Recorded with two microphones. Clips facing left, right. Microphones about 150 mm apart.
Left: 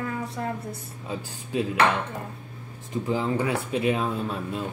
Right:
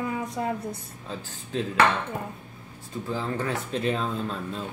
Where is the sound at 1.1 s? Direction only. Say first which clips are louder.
Left 2 dB; 10° left (ahead or behind).